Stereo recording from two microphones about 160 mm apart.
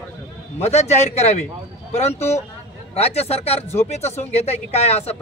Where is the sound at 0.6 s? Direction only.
45° left (ahead or behind).